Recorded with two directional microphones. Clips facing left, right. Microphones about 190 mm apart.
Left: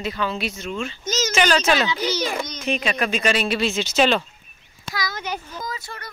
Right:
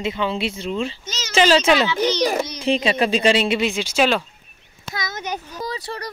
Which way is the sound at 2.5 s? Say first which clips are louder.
Right 5 dB; 30° right (ahead or behind).